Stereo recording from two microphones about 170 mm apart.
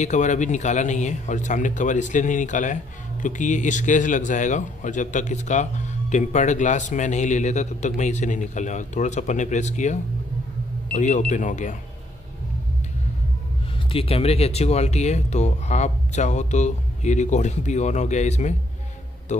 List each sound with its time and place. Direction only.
0.0 s speech: 45° left (ahead or behind)
13.9 s speech: 35° left (ahead or behind)